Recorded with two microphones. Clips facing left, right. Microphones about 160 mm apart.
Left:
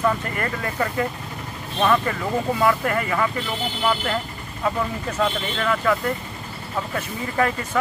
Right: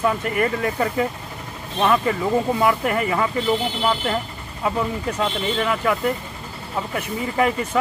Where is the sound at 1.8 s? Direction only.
10° right (ahead or behind).